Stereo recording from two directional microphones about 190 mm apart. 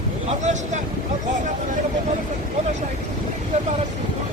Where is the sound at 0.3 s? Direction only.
40° right (ahead or behind).